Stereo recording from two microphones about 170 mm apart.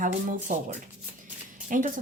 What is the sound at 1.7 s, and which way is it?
Speech, 50° right (ahead or behind).